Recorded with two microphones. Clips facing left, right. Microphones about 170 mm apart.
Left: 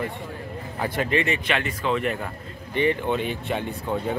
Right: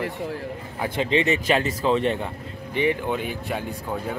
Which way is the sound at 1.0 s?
25° right (ahead or behind).